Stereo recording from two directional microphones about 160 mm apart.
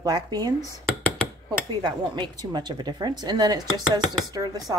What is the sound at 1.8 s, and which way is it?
Speech, 30° right (ahead or behind).